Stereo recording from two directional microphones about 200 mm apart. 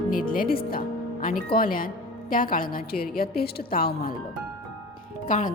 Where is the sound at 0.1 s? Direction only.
45° left (ahead or behind).